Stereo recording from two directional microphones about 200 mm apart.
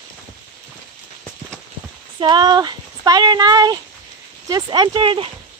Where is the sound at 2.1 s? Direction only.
20° right (ahead or behind).